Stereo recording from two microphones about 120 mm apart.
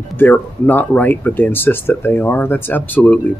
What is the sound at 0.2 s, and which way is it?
Speech, 15° left (ahead or behind).